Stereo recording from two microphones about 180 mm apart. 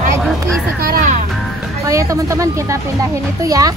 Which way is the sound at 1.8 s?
20° right (ahead or behind).